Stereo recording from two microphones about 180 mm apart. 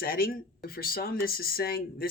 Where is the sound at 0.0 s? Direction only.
55° left (ahead or behind).